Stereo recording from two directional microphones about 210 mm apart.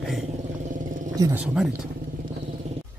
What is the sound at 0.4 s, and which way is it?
Vehicle, 35° right (ahead or behind).